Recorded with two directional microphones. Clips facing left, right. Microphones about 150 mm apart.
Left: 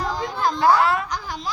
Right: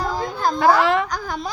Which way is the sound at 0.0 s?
40° right (ahead or behind).